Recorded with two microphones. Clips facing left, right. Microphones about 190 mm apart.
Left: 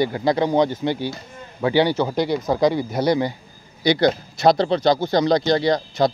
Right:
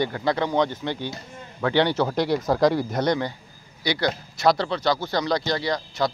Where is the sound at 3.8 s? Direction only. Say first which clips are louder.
Left 7 dB; 20° left (ahead or behind).